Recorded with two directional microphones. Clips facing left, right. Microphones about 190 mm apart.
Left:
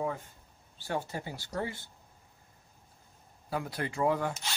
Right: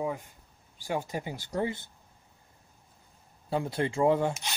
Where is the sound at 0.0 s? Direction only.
15° right (ahead or behind).